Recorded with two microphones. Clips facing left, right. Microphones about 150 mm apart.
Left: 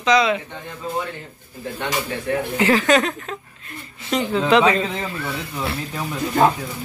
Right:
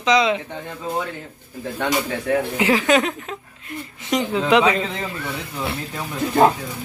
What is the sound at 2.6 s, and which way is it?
Speech, 10° right (ahead or behind).